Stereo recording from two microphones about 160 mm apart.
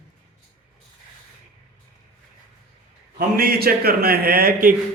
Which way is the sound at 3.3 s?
70° right (ahead or behind).